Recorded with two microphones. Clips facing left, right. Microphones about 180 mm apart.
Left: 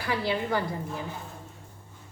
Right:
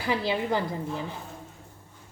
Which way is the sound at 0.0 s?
20° right (ahead or behind).